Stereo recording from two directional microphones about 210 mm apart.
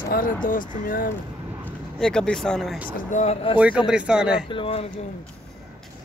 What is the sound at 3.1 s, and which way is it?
Speech, 30° left (ahead or behind).